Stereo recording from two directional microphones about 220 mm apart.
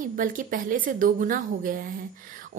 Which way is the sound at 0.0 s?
35° right (ahead or behind).